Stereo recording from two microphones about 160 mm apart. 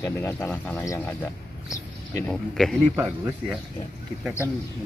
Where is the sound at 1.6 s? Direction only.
20° left (ahead or behind).